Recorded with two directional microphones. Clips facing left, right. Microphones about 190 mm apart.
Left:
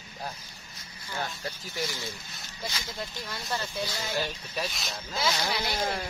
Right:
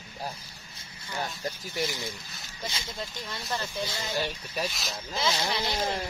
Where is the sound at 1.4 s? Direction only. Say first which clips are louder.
Right 3 dB; 20° right (ahead or behind).